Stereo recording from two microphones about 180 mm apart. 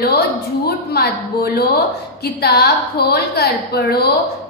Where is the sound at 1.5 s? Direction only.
60° left (ahead or behind).